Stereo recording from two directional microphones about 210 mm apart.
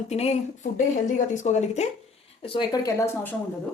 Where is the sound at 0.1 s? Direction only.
30° left (ahead or behind); by 3.3 s 15° left (ahead or behind).